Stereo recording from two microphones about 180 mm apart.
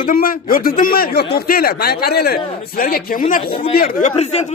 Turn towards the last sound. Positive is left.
turn(degrees=35)  # may be behind; listen again after turning